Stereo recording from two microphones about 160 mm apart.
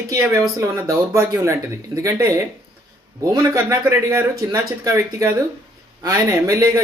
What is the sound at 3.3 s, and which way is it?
Speech, 20° right (ahead or behind).